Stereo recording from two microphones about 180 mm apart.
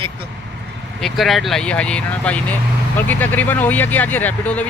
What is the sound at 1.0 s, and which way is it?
Speech, centre (ahead or behind).